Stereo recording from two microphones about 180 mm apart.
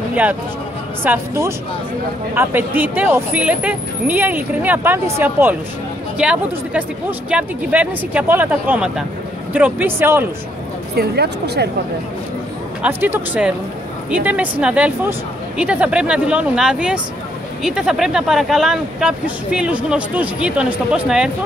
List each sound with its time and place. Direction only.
0.1 s speech: 10° right (ahead or behind)
11.0 s speech: 65° right (ahead or behind)
12.8 s speech: 10° right (ahead or behind)